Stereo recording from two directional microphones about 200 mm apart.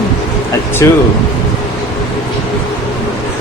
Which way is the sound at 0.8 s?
15° left (ahead or behind).